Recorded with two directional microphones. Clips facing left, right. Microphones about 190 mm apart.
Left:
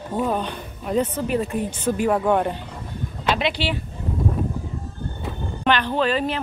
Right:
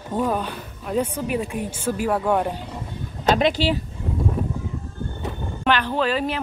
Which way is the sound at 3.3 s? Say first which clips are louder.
Right 4 dB; 45° right (ahead or behind).